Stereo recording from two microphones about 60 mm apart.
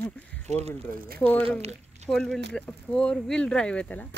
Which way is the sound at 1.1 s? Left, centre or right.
Left.